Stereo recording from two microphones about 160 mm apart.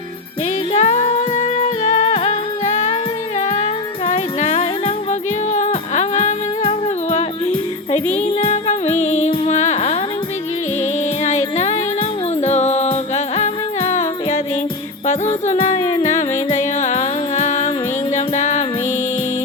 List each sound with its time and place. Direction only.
0.7 s music: 45° left (ahead or behind)
4.0 s music: 40° left (ahead or behind)
11.2 s music: 45° left (ahead or behind)
15.8 s music: 25° left (ahead or behind)
16.0 s music: 50° left (ahead or behind)